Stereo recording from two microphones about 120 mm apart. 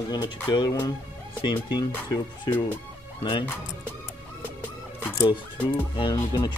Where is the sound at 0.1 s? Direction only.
40° left (ahead or behind).